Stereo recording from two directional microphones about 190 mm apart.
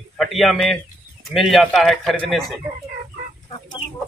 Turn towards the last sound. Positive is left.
turn(degrees=25)  # may be behind; listen again after turning